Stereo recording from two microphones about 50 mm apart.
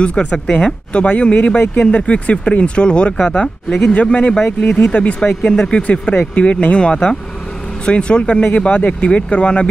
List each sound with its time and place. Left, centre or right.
0.0 s speech: left